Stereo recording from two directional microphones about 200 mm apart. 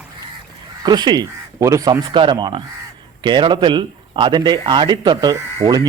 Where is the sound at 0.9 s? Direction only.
20° right (ahead or behind).